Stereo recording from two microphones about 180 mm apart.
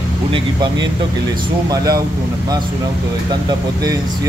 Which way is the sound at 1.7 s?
20° right (ahead or behind).